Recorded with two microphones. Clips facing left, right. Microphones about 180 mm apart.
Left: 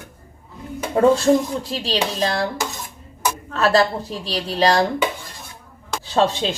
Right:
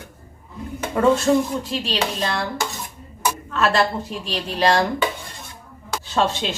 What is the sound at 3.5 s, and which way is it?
A woman's voice, 40° left (ahead or behind).